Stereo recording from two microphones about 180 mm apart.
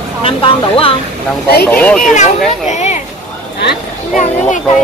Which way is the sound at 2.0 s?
40° left (ahead or behind).